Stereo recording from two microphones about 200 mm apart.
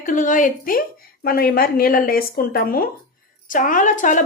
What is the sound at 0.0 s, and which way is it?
A woman's voice, 40° left (ahead or behind).